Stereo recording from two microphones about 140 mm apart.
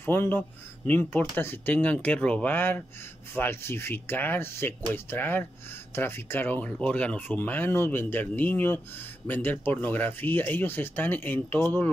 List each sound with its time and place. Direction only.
0.0 s speech: 15° left (ahead or behind)